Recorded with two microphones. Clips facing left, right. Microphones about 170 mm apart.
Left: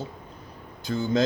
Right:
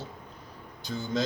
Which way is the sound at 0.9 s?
70° left (ahead or behind).